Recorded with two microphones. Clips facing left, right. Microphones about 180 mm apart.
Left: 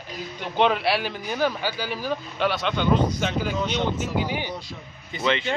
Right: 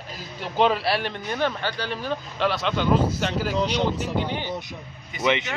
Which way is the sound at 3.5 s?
35° right (ahead or behind).